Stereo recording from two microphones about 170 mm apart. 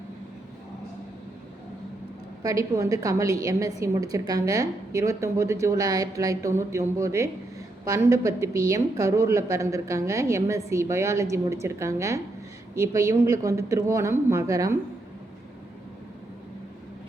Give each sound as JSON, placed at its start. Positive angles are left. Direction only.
{"t": 2.4, "sound": "a woman's voice", "side_deg": -20}